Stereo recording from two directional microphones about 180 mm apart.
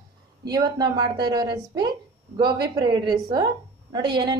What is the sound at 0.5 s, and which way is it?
A woman's voice, 20° right (ahead or behind).